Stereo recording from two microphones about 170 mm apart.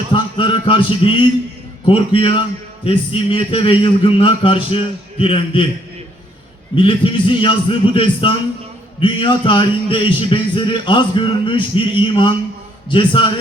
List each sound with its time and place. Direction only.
0.1 s a man's voice: 30° left (ahead or behind)
6.7 s a man's voice: 30° left (ahead or behind)